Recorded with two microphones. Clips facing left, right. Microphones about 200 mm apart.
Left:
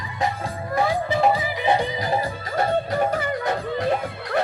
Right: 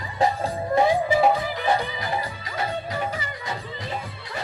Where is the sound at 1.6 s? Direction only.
20° left (ahead or behind).